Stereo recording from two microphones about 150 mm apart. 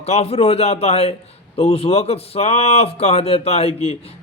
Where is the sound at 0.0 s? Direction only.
45° left (ahead or behind).